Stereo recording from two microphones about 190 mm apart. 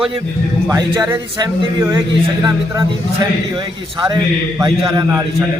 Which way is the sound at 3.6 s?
25° right (ahead or behind).